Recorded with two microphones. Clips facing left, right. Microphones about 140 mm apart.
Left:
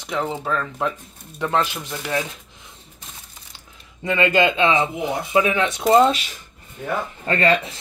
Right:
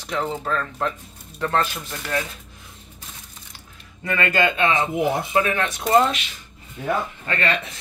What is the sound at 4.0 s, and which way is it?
Speech, 20° left (ahead or behind).